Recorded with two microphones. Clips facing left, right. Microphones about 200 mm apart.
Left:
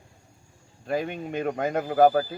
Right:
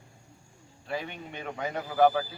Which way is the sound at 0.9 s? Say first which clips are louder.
Left 7 dB; 45° left (ahead or behind).